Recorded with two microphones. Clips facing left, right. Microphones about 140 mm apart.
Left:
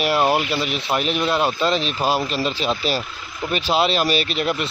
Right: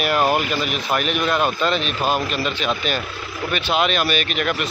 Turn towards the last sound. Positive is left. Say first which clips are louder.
# left 1 dB
turn(degrees=30)  # may be behind; listen again after turning